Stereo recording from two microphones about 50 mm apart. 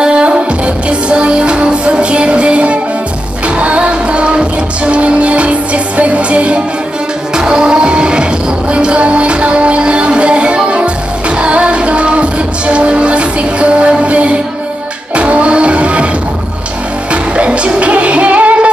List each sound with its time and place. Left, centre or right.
0.0 s music: centre
17.1 s music: right